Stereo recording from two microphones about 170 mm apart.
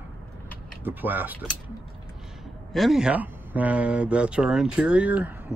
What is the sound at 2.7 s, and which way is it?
Speech, centre (ahead or behind).